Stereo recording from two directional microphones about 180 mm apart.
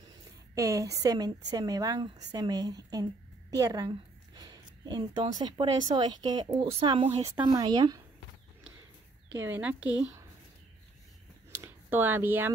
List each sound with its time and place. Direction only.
0.6 s speech: 20° right (ahead or behind)
9.4 s a woman's voice: 10° right (ahead or behind)
11.5 s a sound: 10° right (ahead or behind)